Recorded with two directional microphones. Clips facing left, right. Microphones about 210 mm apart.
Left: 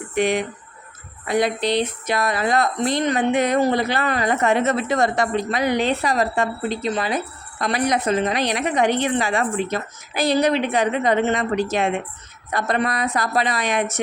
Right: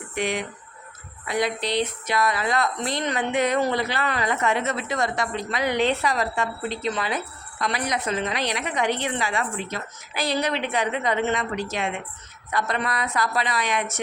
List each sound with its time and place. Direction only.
0.1 s speech: 45° left (ahead or behind)